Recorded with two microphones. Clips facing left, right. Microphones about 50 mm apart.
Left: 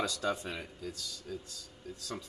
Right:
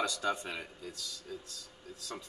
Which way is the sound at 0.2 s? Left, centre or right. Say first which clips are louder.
Even; centre.